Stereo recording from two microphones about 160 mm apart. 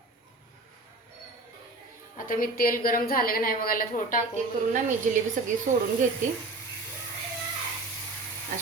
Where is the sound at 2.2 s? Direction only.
60° left (ahead or behind).